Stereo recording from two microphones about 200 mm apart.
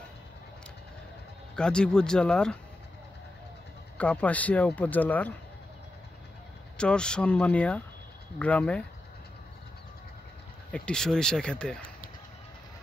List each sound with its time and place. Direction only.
1.5 s speech: 5° left (ahead or behind)
4.0 s speech: 5° left (ahead or behind)
6.8 s speech: 5° left (ahead or behind)
10.7 s speech: 5° left (ahead or behind)